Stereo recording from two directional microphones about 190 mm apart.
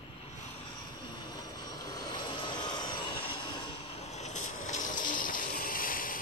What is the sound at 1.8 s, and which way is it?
Vehicle, 20° left (ahead or behind).